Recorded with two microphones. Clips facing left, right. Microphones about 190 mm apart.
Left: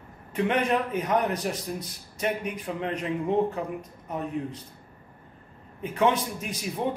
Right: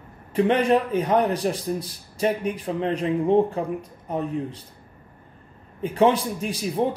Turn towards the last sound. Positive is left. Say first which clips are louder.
# right 7 dB
turn(degrees=-30)  # may be behind; listen again after turning